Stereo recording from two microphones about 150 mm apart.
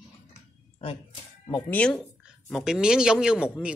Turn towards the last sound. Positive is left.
turn(degrees=-5)  # may be behind; listen again after turning